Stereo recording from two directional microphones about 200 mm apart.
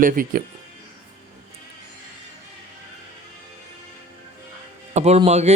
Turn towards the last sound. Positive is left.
turn(degrees=-35)  # may be behind; listen again after turning